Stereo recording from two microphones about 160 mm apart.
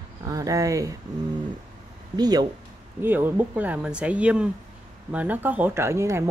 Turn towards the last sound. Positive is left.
turn(degrees=-15)  # may be behind; listen again after turning